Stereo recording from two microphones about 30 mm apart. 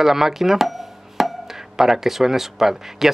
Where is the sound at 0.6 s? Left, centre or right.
Centre.